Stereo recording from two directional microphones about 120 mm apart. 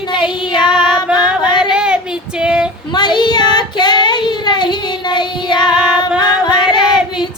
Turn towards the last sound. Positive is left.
turn(degrees=40)  # may be behind; listen again after turning